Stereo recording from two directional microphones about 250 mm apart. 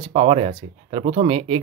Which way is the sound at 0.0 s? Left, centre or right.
Right.